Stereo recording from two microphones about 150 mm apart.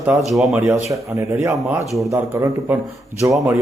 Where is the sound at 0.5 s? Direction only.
15° right (ahead or behind).